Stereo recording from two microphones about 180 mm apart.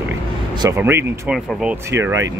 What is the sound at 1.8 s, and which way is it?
Speech, 15° right (ahead or behind).